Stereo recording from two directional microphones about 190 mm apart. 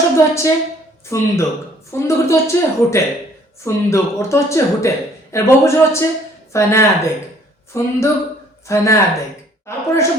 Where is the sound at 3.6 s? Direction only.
15° left (ahead or behind).